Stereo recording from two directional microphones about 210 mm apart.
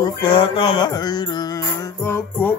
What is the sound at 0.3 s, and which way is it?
Music, 25° left (ahead or behind).